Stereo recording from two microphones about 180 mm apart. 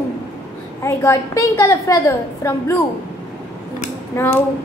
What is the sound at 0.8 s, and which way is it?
A woman's voice, 15° left (ahead or behind).